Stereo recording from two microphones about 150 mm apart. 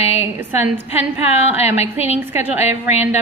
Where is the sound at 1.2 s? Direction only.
45° left (ahead or behind).